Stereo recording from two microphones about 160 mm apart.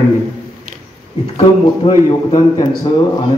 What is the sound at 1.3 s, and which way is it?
A man's voice, 35° left (ahead or behind).